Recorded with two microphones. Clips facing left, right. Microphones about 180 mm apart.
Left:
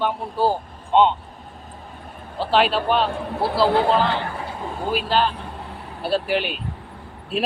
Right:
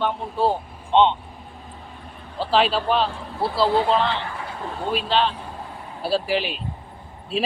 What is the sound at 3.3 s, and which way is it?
Speech, 65° left (ahead or behind).